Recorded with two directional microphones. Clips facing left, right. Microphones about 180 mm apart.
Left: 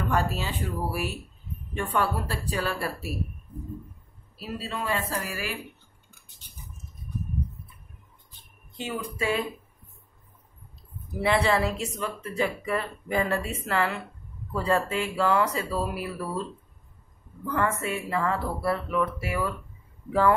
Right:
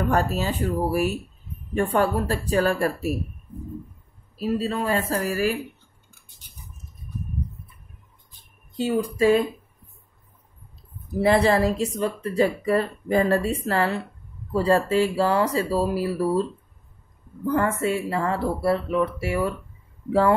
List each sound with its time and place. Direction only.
0.1 s speech: 45° right (ahead or behind)
4.4 s speech: 40° right (ahead or behind)
8.7 s speech: 40° right (ahead or behind)
11.1 s speech: 40° right (ahead or behind)
17.5 s speech: 30° right (ahead or behind)